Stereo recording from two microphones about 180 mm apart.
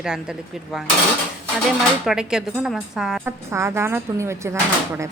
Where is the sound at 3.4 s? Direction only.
15° right (ahead or behind).